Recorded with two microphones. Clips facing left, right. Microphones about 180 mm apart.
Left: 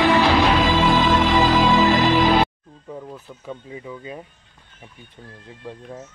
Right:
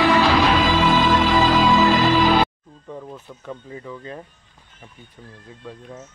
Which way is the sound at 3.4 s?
10° left (ahead or behind).